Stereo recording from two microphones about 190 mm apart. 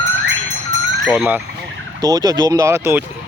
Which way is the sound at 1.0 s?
Centre (ahead or behind).